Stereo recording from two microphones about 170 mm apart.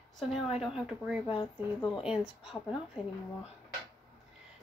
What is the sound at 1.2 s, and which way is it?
Speech, 30° left (ahead or behind).